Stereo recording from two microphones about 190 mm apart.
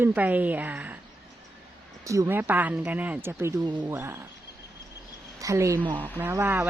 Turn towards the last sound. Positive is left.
turn(degrees=-10)  # may be behind; listen again after turning